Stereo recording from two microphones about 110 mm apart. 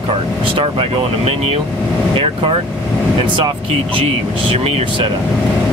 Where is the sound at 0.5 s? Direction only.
55° right (ahead or behind).